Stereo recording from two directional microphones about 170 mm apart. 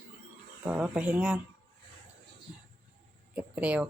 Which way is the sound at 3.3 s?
10° right (ahead or behind).